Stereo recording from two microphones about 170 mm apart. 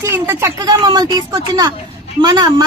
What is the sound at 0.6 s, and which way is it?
Speech, 25° right (ahead or behind).